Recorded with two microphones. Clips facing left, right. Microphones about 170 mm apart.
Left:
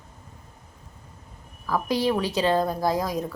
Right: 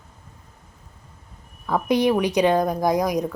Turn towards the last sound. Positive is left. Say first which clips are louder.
# right 4 dB
turn(degrees=-15)  # may be behind; listen again after turning